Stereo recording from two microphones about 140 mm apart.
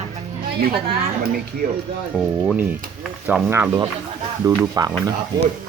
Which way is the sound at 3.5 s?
15° right (ahead or behind).